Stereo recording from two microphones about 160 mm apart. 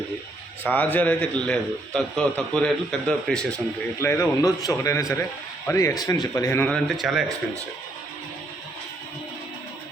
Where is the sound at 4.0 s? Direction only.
20° left (ahead or behind).